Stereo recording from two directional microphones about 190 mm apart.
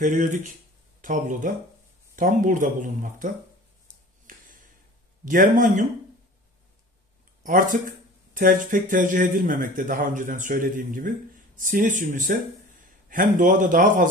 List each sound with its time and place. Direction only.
0.0 s a man's voice: 40° right (ahead or behind)
4.3 s a sound: 45° right (ahead or behind)
5.2 s a man's voice: 45° right (ahead or behind)
7.4 s a man's voice: 45° right (ahead or behind)